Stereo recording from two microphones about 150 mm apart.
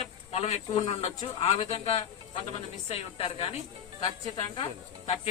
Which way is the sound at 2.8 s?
40° left (ahead or behind).